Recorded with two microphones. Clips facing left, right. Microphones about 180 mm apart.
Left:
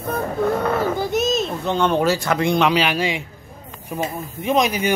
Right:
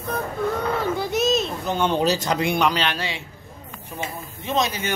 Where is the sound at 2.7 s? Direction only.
10° left (ahead or behind).